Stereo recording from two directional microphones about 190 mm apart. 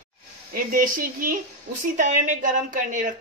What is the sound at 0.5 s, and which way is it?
A woman's voice, 50° right (ahead or behind).